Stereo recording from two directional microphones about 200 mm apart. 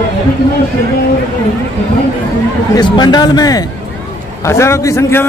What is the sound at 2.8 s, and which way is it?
A man's voice, 20° left (ahead or behind).